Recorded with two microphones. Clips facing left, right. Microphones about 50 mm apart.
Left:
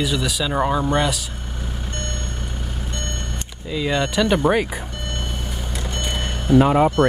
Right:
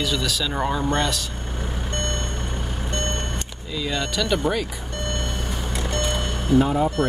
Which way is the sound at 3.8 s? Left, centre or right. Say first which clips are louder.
Left 5 dB; left.